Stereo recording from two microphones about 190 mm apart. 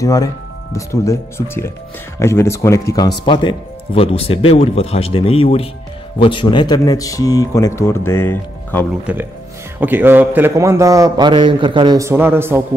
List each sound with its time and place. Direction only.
0.0 s speech: 20° left (ahead or behind)
9.0 s a man's voice: 10° right (ahead or behind)